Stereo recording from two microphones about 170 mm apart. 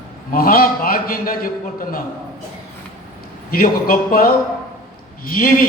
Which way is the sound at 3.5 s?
60° left (ahead or behind).